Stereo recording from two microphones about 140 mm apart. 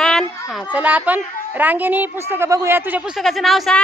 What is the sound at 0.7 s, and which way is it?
A woman's voice, 10° right (ahead or behind).